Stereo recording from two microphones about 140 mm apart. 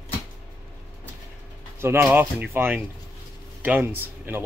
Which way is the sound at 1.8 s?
15° right (ahead or behind).